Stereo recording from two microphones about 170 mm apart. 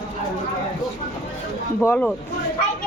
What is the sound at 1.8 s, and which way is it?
Speech, 15° left (ahead or behind).